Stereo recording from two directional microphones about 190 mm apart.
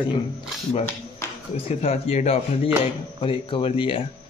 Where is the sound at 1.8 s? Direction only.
30° left (ahead or behind).